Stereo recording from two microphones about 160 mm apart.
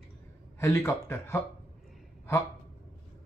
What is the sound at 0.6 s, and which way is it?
Speech, 15° left (ahead or behind).